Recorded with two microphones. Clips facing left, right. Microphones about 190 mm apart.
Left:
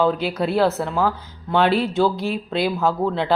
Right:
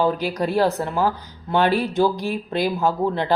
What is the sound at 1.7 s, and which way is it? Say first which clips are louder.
Speech: left 1 dB; 15° right (ahead or behind).